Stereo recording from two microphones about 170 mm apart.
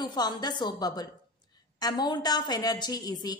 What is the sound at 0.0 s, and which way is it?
A woman's voice, 25° left (ahead or behind).